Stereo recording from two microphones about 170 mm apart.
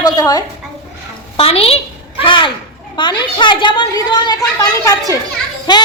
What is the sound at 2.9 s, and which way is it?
A woman's voice, 25° left (ahead or behind).